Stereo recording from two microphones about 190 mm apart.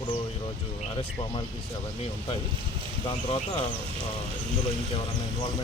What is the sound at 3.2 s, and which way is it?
Speech, 30° left (ahead or behind).